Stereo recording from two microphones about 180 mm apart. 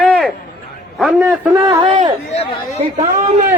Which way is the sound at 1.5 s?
20° right (ahead or behind).